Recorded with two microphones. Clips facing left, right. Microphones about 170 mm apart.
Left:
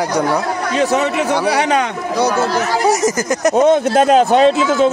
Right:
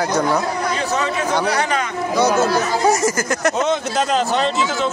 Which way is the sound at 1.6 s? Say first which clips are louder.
Left 5 dB; 75° left (ahead or behind).